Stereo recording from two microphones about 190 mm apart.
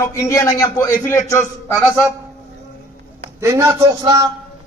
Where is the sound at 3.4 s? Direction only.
15° right (ahead or behind).